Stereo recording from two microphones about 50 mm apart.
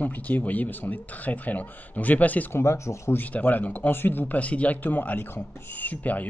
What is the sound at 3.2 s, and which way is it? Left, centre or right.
Speech, left.